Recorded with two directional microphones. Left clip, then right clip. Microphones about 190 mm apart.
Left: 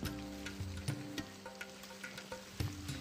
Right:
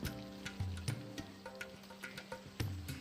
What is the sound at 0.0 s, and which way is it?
Music, centre (ahead or behind).